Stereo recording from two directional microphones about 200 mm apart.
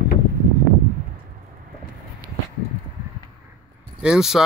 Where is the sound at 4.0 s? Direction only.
5° right (ahead or behind).